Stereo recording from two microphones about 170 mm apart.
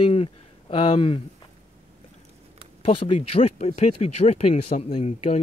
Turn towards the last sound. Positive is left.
turn(degrees=40)  # may be behind; listen again after turning